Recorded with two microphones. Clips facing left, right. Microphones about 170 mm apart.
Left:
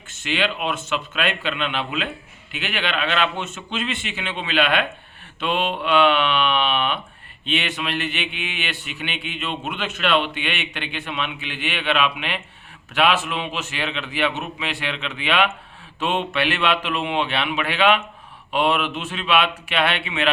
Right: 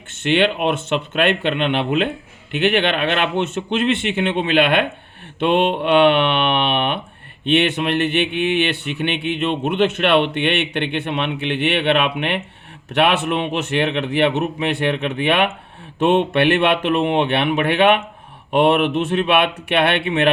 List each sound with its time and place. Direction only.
0.1 s speech: 60° right (ahead or behind)